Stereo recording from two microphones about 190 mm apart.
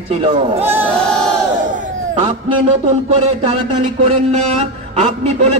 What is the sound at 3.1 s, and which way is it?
Speech, 35° right (ahead or behind).